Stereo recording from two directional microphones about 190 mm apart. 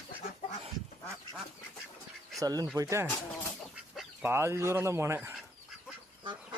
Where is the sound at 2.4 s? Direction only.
20° right (ahead or behind).